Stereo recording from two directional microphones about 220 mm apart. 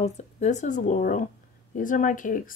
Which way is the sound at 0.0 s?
30° left (ahead or behind).